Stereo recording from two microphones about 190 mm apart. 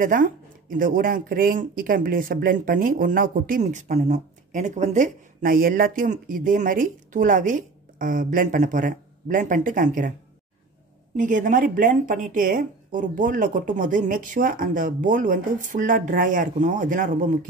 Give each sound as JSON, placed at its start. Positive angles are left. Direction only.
{"t": 0.0, "sound": "speech", "side_deg": -45}
{"t": 11.1, "sound": "speech", "side_deg": -45}